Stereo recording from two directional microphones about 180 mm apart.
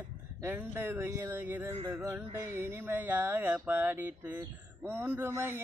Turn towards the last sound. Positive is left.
turn(degrees=-15)  # may be behind; listen again after turning